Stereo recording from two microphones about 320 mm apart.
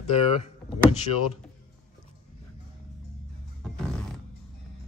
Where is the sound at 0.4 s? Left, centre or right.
Centre.